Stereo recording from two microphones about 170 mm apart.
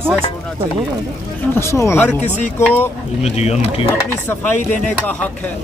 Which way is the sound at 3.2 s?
40° left (ahead or behind).